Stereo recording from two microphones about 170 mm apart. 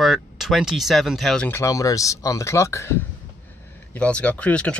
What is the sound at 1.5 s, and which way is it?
Speech, 15° left (ahead or behind).